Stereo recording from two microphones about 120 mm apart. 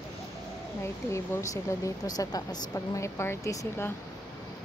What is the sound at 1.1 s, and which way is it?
Speech, 25° left (ahead or behind).